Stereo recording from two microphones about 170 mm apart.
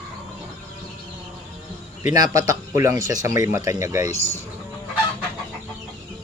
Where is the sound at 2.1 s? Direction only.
20° right (ahead or behind).